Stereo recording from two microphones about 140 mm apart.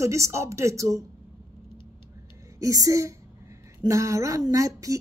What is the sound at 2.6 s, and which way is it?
A woman's voice, 25° right (ahead or behind).